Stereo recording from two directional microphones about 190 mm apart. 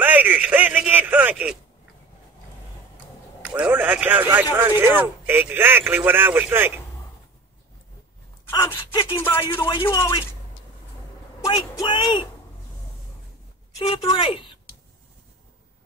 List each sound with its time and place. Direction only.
0.0 s a sound: 10° right (ahead or behind)
3.4 s speech: 10° right (ahead or behind)
9.1 s speech: 15° left (ahead or behind)
11.4 s speech: 20° left (ahead or behind)
13.7 s a woman's voice: 30° left (ahead or behind)